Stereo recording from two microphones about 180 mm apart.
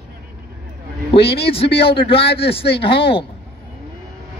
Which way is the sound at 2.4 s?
30° left (ahead or behind).